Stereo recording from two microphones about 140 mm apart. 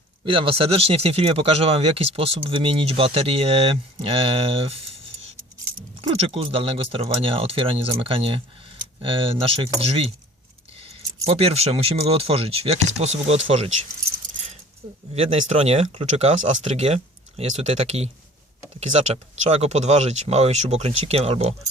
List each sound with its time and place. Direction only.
0.3 s speech: 40° right (ahead or behind)
6.0 s speech: 45° right (ahead or behind)
15.1 s speech: 45° right (ahead or behind)